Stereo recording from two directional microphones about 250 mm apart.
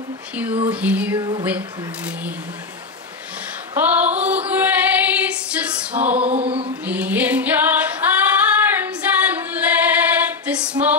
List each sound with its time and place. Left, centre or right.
0.7 s female singing: centre
1.2 s speech: centre
3.7 s female singing: centre
6.3 s a sound: right
6.9 s female singing: centre